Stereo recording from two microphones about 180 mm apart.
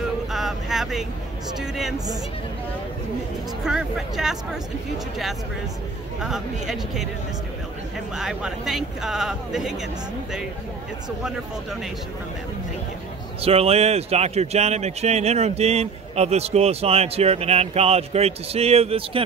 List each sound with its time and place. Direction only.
0.3 s vehicle: centre (ahead or behind)
1.6 s speech: centre (ahead or behind)
3.6 s speech: 5° right (ahead or behind)
8.2 s speech: 5° right (ahead or behind)
11.2 s speech: 5° right (ahead or behind)
13.4 s speech: 35° right (ahead or behind)